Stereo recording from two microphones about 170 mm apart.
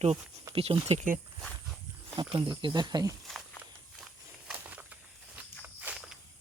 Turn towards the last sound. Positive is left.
turn(degrees=-5)  # may be behind; listen again after turning